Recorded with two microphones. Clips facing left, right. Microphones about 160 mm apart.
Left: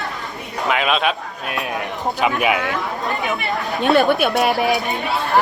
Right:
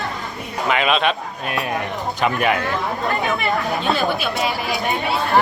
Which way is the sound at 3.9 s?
60° left (ahead or behind).